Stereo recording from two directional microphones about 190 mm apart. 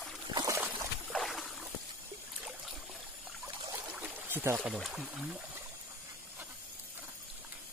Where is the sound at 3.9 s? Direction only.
10° right (ahead or behind).